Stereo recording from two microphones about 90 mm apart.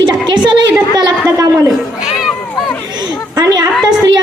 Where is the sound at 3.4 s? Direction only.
45° right (ahead or behind).